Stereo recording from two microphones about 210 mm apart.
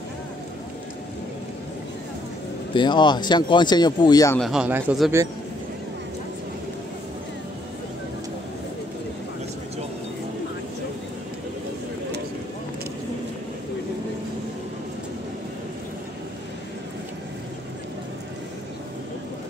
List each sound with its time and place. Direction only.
2.7 s speech: 20° left (ahead or behind)
4.4 s speech: 5° right (ahead or behind)